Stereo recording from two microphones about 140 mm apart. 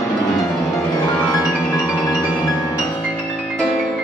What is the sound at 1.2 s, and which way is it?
Music, 25° left (ahead or behind).